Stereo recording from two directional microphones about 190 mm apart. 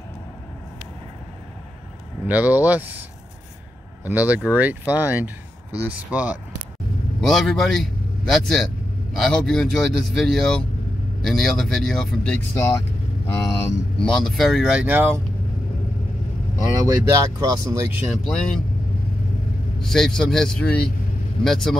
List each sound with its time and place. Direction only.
2.2 s speech: 10° right (ahead or behind)
4.0 s a man's voice: 10° right (ahead or behind)
14.0 s speech: centre (ahead or behind)
16.8 s speech: 15° right (ahead or behind)
18.0 s speech: 5° left (ahead or behind)
19.8 s speech: 5° left (ahead or behind)